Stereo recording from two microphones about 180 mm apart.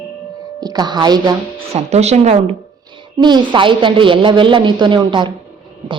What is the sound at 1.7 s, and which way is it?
Speech, 35° right (ahead or behind).